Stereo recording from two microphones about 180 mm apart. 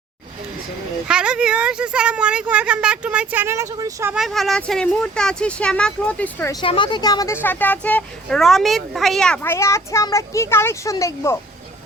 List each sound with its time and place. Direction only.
1.0 s a woman's voice: 5° right (ahead or behind)
4.1 s speech: centre (ahead or behind)
6.5 s a woman's voice: 25° left (ahead or behind)
7.4 s speech: 10° left (ahead or behind)